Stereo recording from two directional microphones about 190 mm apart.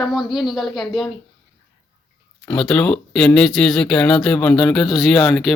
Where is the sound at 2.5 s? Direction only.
5° left (ahead or behind).